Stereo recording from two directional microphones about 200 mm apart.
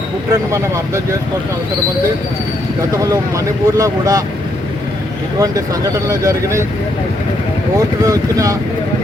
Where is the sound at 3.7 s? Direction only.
15° right (ahead or behind).